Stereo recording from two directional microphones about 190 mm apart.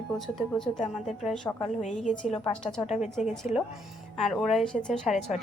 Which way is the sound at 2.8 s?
35° left (ahead or behind).